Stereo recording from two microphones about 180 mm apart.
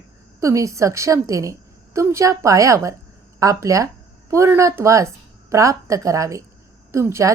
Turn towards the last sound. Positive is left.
turn(degrees=-15)  # may be behind; listen again after turning